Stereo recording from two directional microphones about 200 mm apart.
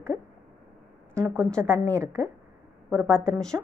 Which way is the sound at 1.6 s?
10° right (ahead or behind).